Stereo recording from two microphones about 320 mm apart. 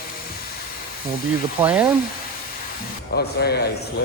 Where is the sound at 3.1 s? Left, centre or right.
Left.